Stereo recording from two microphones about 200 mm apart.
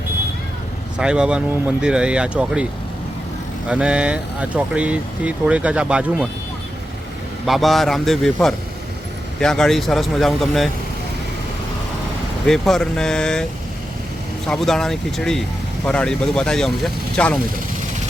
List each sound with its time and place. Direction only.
0.9 s speech: 5° right (ahead or behind)
3.7 s speech: 5° right (ahead or behind)
7.4 s speech: centre (ahead or behind)
12.5 s speech: centre (ahead or behind)
14.4 s speech: centre (ahead or behind)